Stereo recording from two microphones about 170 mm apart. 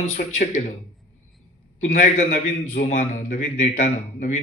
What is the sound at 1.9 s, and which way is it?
A man's voice, 45° left (ahead or behind).